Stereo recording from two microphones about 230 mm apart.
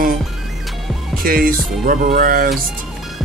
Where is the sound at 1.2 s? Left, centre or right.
Right.